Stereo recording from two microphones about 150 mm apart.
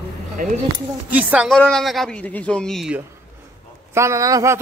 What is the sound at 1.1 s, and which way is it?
Speech, 10° right (ahead or behind).